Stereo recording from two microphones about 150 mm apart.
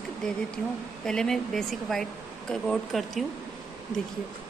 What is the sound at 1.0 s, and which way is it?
A woman's voice, 5° left (ahead or behind).